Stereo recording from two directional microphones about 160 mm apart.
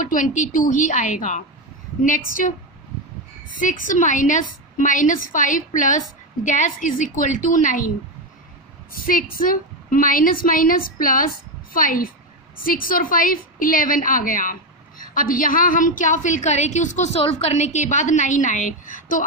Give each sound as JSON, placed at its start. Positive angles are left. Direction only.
{"t": 0.0, "sound": "a woman's voice", "side_deg": 55}
{"t": 8.9, "sound": "a woman's voice", "side_deg": 60}